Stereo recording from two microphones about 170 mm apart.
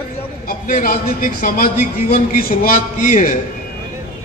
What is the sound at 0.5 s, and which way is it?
A man's voice, 55° left (ahead or behind).